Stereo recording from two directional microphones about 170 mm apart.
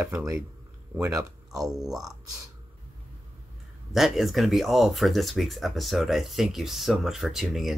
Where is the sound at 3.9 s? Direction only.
Centre (ahead or behind).